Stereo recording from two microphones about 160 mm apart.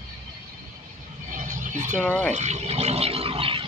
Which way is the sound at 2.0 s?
10° left (ahead or behind).